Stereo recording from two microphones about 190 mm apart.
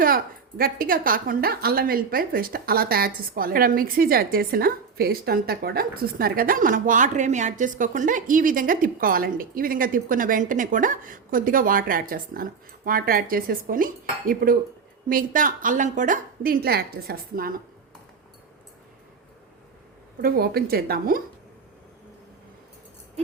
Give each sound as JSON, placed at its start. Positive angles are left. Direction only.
{"t": 0.0, "sound": "a woman's voice", "side_deg": -50}
{"t": 20.2, "sound": "a woman's voice", "side_deg": -50}